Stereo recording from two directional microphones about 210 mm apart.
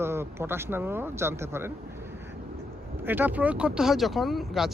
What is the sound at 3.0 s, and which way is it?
Speech, 10° right (ahead or behind).